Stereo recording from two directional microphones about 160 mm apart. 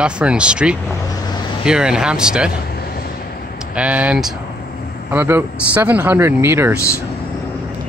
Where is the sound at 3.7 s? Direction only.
10° right (ahead or behind).